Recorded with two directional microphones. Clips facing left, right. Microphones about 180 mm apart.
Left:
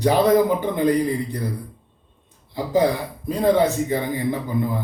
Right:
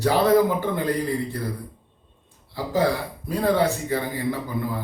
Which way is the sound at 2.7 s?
20° left (ahead or behind).